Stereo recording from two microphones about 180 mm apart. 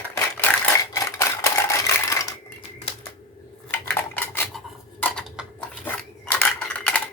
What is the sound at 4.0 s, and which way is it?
Cutlery, 10° left (ahead or behind).